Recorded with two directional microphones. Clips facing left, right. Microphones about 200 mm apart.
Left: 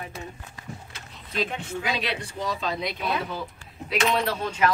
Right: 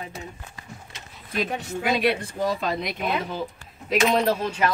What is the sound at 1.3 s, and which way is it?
Speech, 45° right (ahead or behind).